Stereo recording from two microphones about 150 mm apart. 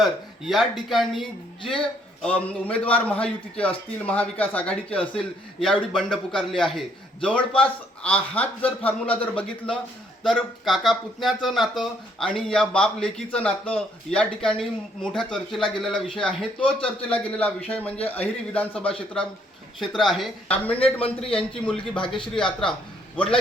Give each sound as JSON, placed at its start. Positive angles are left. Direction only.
{"t": 0.0, "sound": "a man's voice", "side_deg": 0}
{"t": 20.7, "sound": "a man's voice", "side_deg": 40}
{"t": 21.3, "sound": "a man's voice", "side_deg": 5}
{"t": 22.0, "sound": "a man's voice", "side_deg": 35}